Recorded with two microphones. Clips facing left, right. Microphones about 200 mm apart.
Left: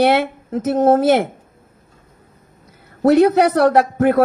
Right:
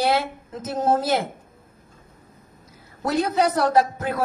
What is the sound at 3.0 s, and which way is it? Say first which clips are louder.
Speech: left 10 dB; 65° left (ahead or behind).